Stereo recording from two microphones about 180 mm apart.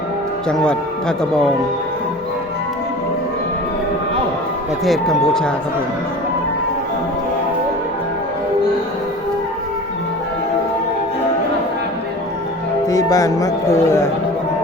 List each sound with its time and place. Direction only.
0.4 s speech: 5° left (ahead or behind)
4.9 s speech: centre (ahead or behind)
12.9 s speech: 20° left (ahead or behind)